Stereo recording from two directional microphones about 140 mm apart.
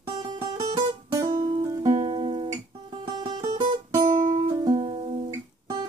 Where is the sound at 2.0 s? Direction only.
40° right (ahead or behind).